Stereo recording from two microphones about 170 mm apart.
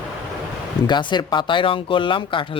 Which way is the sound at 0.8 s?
25° left (ahead or behind).